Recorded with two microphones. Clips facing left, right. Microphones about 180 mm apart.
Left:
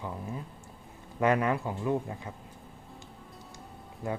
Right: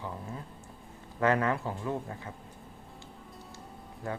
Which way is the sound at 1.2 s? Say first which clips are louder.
Left 1 dB; 15° left (ahead or behind).